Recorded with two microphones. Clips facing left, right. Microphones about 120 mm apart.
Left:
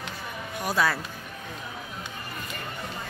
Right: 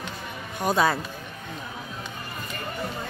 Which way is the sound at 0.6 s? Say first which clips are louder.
Right 3 dB; 25° right (ahead or behind).